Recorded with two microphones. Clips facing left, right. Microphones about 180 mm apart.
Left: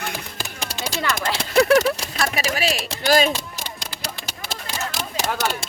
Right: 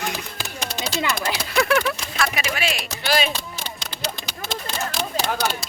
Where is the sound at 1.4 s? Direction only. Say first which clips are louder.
Left 6 dB; 35° left (ahead or behind).